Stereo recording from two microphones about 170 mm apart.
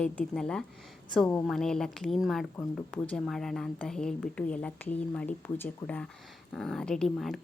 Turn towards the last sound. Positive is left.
turn(degrees=0)  # may be behind; listen again after turning